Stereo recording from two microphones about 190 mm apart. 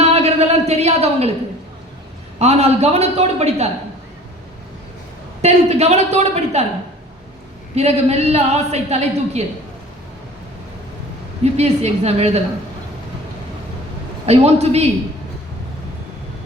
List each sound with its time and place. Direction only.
0.0 s a sound: 35° right (ahead or behind)
2.4 s a woman's voice: 35° right (ahead or behind)
5.4 s a woman's voice: 35° right (ahead or behind)
7.8 s a woman's voice: 35° right (ahead or behind)
11.5 s a woman's voice: 35° right (ahead or behind)
14.3 s a woman's voice: 35° right (ahead or behind)